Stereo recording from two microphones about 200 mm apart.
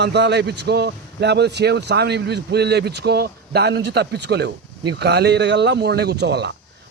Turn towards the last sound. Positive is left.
turn(degrees=-60)  # may be behind; listen again after turning